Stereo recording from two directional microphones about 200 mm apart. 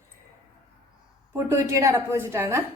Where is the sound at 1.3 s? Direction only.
15° right (ahead or behind).